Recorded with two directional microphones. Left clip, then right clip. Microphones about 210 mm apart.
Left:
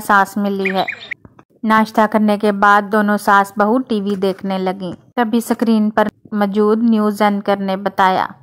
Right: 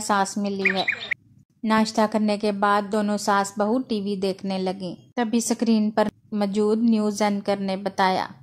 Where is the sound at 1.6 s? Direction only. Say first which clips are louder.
Left 8 dB; 20° left (ahead or behind).